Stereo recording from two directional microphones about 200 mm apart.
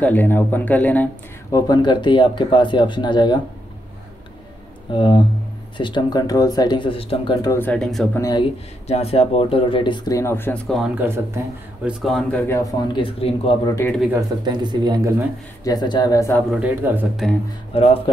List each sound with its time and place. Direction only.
0.0 s a man's voice: 10° left (ahead or behind)
1.5 s speech: 20° left (ahead or behind)
4.9 s speech: 25° left (ahead or behind)
7.5 s speech: 5° left (ahead or behind)
8.2 s speech: 20° left (ahead or behind)
8.8 s speech: 30° left (ahead or behind); by 11.9 s 10° right (ahead or behind)
12.0 s a man's voice: centre (ahead or behind); by 13.6 s 25° left (ahead or behind)
14.4 s speech: 20° right (ahead or behind)
15.6 s a man's voice: 20° left (ahead or behind)
16.4 s a man's voice: 5° right (ahead or behind)
17.7 s speech: 30° left (ahead or behind)